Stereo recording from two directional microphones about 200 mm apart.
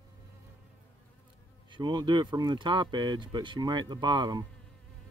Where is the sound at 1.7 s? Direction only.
20° right (ahead or behind).